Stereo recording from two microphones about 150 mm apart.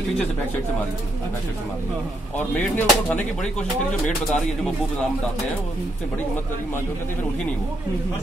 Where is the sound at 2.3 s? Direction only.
10° left (ahead or behind).